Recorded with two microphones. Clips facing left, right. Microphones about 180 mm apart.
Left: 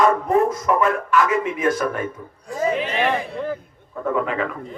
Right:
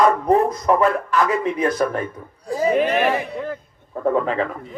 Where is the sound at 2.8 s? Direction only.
50° right (ahead or behind).